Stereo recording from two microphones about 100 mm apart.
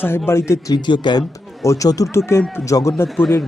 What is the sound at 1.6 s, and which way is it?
Speech, 30° left (ahead or behind).